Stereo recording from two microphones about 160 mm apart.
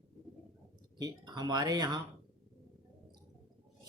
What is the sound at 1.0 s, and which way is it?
Speech, 25° right (ahead or behind).